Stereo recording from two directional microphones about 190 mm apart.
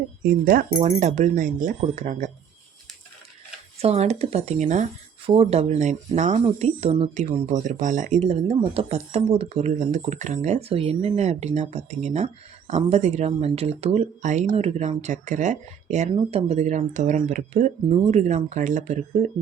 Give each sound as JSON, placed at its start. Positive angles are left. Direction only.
{"t": 0.2, "sound": "speech", "side_deg": -50}
{"t": 0.7, "sound": "speech", "side_deg": -35}
{"t": 3.8, "sound": "speech", "side_deg": -35}